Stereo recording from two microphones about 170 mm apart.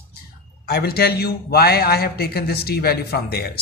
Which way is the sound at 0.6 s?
65° left (ahead or behind).